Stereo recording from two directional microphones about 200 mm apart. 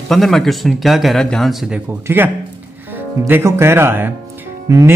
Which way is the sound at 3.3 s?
10° right (ahead or behind).